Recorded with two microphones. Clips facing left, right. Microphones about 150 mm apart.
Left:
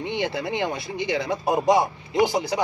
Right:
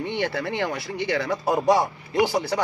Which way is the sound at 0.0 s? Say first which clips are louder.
Even; 15° left (ahead or behind).